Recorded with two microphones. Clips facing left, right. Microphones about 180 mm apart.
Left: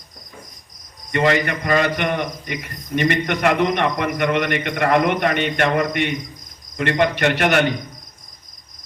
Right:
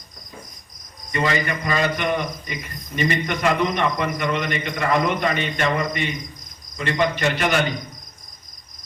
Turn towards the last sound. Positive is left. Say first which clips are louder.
# left 4 dB
turn(degrees=65)  # may be behind; listen again after turning